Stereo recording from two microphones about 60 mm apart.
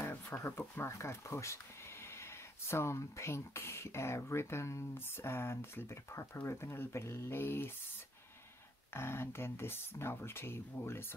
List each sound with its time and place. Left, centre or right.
0.0 s a sound: left
0.5 s speech: left
8.9 s speech: left